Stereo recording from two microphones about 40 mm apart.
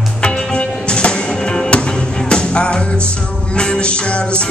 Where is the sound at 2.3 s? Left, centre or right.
Left.